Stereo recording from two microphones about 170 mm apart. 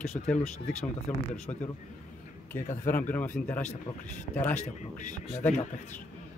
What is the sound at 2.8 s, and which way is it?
Speech, 10° left (ahead or behind).